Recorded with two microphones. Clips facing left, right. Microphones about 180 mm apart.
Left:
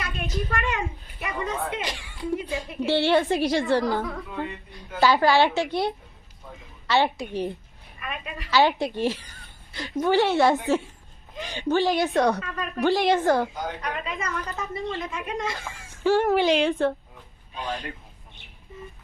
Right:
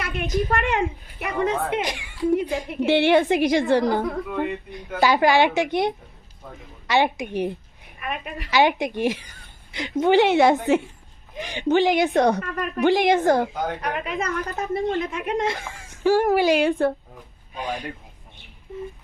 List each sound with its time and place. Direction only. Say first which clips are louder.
0.5 s speech: right 6 dB; 60° right (ahead or behind)
1.8 s a child's voice: right 7 dB; 15° right (ahead or behind)
4.0 s speech: right 6 dB; 50° right (ahead or behind)
4.9 s a child's voice: right 1 dB; 15° right (ahead or behind)
6.8 s a child's voice: right 2 dB; 15° right (ahead or behind)
7.9 s speech: right 4 dB; 55° right (ahead or behind)
8.4 s a child's voice: right 1 dB; 15° right (ahead or behind)
12.4 s speech: right 4 dB; 55° right (ahead or behind)
12.8 s a child's voice: right 3 dB; 15° right (ahead or behind)
13.5 s speech: right 4 dB; 55° right (ahead or behind)
15.5 s a child's voice: right 2 dB; 15° right (ahead or behind)